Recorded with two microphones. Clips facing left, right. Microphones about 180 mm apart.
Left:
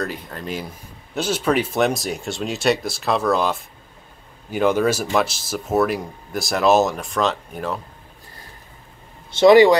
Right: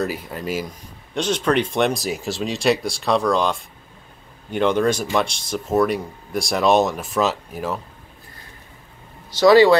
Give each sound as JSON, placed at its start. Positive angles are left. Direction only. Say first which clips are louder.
{"t": 0.0, "sound": "speech", "louder": "right 3 dB", "side_deg": -5}
{"t": 1.1, "sound": "speech", "louder": "right 1 dB", "side_deg": 5}
{"t": 9.4, "sound": "speech", "louder": "left 1 dB", "side_deg": 20}